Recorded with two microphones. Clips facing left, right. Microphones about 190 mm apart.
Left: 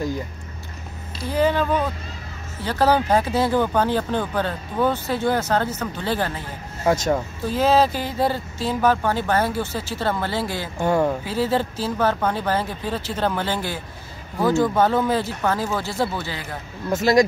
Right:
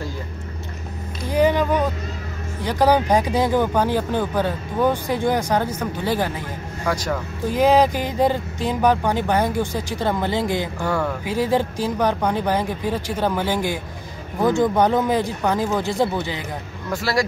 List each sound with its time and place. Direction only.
1.3 s speech: 15° right (ahead or behind)
6.8 s speech: 25° left (ahead or behind)
7.4 s speech: 15° right (ahead or behind)
10.8 s speech: 25° left (ahead or behind)
11.2 s speech: 15° right (ahead or behind)
16.9 s speech: 20° left (ahead or behind)